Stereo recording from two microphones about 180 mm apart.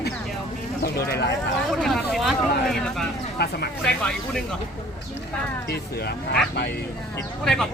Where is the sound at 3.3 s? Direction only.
65° left (ahead or behind).